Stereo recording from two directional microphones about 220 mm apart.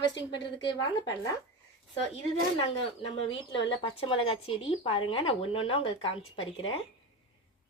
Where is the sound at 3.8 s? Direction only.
20° left (ahead or behind).